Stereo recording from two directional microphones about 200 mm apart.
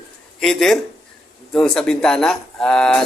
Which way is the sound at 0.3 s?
Centre (ahead or behind).